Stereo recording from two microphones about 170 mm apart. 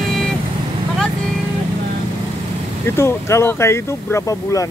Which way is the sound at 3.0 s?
15° left (ahead or behind).